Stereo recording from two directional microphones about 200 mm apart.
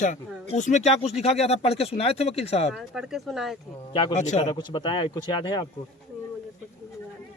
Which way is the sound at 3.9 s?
25° left (ahead or behind).